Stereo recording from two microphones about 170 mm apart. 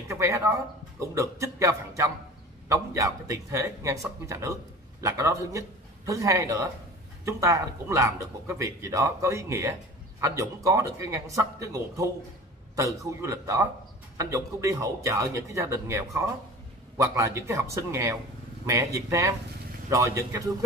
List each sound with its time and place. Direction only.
0.1 s a man's voice: 15° right (ahead or behind)